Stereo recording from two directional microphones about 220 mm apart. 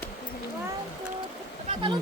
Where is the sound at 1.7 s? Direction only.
20° right (ahead or behind).